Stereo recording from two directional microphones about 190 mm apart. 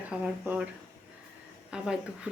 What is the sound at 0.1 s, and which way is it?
Speech, 5° right (ahead or behind).